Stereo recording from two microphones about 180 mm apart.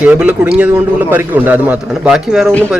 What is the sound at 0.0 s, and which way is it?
A man's voice, 5° right (ahead or behind).